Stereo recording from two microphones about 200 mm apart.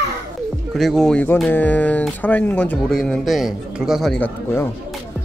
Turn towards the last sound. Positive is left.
turn(degrees=10)  # may be behind; listen again after turning